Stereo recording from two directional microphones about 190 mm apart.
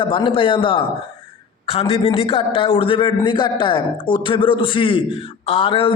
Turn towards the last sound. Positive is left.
turn(degrees=25)  # may be behind; listen again after turning